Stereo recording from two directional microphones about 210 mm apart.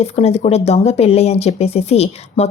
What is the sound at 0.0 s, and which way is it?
Speech, 30° left (ahead or behind).